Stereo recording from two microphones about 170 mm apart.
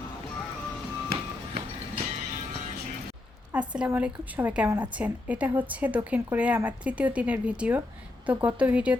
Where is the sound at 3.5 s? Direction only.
5° right (ahead or behind).